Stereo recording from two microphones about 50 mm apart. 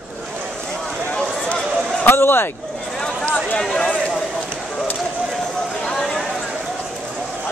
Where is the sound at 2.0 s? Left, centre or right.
Left.